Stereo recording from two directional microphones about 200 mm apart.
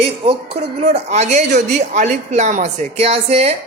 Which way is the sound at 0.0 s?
30° right (ahead or behind).